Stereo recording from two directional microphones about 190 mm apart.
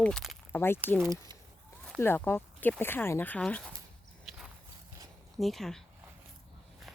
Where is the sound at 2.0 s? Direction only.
10° left (ahead or behind).